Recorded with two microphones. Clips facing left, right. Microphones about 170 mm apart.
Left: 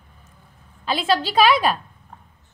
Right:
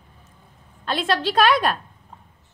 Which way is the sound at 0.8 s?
5° left (ahead or behind).